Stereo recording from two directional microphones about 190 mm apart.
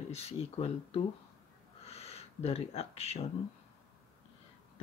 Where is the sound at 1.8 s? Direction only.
35° left (ahead or behind).